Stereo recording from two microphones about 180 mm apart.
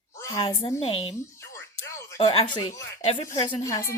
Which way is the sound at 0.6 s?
30° left (ahead or behind).